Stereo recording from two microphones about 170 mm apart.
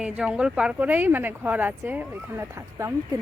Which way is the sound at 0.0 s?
5° right (ahead or behind).